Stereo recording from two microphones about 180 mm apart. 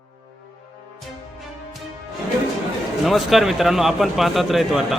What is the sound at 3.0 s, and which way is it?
Speech, centre (ahead or behind).